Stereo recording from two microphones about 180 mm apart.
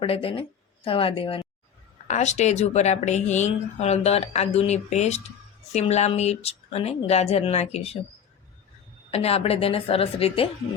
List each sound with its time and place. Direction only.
0.0 s speech: 30° left (ahead or behind)
9.1 s speech: 35° left (ahead or behind)